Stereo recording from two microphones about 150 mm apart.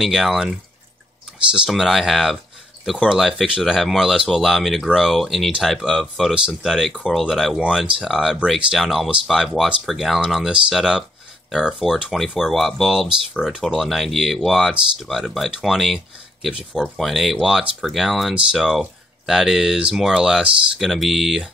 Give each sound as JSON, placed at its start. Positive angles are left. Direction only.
{"t": 0.0, "sound": "speech", "side_deg": 0}